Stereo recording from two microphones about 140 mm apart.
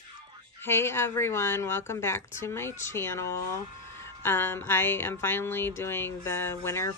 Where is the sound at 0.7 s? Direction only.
15° left (ahead or behind).